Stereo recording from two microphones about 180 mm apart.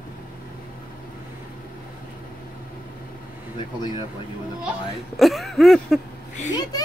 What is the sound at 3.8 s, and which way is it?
Speech, 25° left (ahead or behind).